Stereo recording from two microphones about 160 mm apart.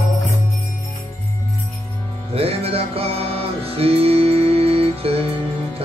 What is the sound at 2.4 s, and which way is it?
Music, 40° right (ahead or behind).